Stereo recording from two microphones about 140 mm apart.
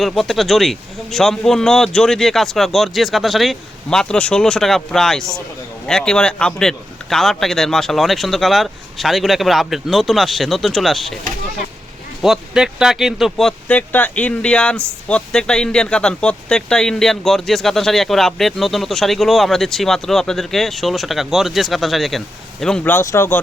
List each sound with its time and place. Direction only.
0.0 s speech: centre (ahead or behind)
12.2 s speech: 5° right (ahead or behind)
22.8 s speech: 15° left (ahead or behind)